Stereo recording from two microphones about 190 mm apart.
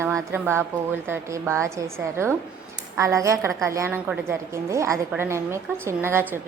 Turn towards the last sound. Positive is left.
turn(degrees=-10)  # may be behind; listen again after turning